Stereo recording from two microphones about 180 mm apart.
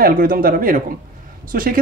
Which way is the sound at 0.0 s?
55° right (ahead or behind).